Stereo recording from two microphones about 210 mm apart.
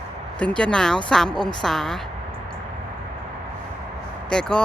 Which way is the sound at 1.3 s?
20° left (ahead or behind).